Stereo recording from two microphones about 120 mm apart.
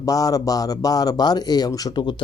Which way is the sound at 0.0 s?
30° left (ahead or behind).